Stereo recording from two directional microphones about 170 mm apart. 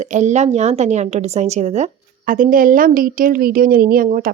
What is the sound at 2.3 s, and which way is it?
A woman's voice, 55° right (ahead or behind).